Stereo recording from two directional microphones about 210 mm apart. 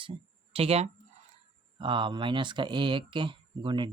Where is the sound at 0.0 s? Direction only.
25° right (ahead or behind).